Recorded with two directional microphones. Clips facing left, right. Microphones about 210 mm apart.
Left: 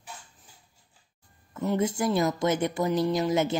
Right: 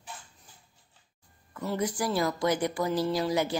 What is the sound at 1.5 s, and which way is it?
Speech, 20° left (ahead or behind).